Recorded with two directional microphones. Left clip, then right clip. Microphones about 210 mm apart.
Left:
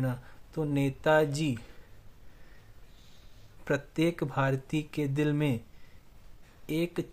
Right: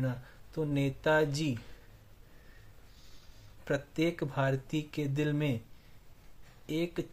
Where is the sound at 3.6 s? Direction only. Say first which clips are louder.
Left 3 dB; 30° left (ahead or behind).